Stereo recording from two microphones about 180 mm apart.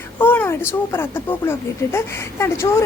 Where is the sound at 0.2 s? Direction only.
10° left (ahead or behind).